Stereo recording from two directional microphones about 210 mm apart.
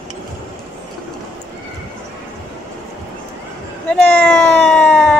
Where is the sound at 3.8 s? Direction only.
5° left (ahead or behind).